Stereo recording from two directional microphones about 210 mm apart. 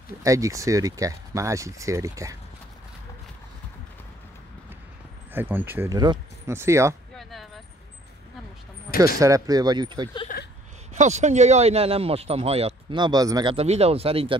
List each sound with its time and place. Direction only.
0.2 s speech: 15° right (ahead or behind)
5.3 s speech: 10° right (ahead or behind)
7.2 s a sound: centre (ahead or behind)
9.2 s speech: 15° right (ahead or behind)
11.0 s speech: 35° right (ahead or behind)